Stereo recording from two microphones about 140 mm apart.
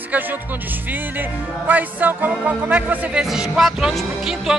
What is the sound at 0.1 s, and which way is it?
Speech, 10° right (ahead or behind).